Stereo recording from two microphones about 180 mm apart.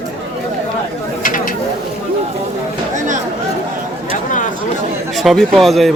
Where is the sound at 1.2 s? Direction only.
45° left (ahead or behind).